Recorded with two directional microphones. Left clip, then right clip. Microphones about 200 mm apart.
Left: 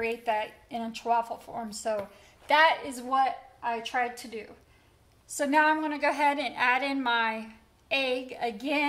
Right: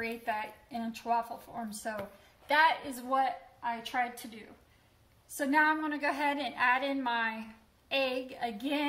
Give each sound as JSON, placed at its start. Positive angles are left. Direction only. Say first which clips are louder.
{"t": 0.0, "sound": "a woman's voice", "louder": "left 6 dB", "side_deg": 30}
{"t": 5.4, "sound": "a woman's voice", "louder": "left 4 dB", "side_deg": 35}